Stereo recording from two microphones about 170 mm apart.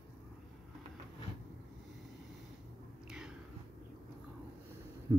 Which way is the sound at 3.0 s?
5° right (ahead or behind).